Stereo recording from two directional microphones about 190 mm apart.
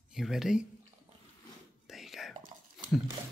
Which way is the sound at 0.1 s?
Centre (ahead or behind).